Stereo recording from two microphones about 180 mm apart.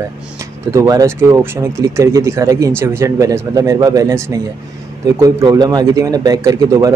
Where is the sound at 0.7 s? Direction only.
15° right (ahead or behind).